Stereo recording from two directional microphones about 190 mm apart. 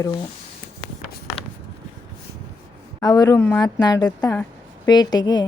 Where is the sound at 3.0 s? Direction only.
20° left (ahead or behind).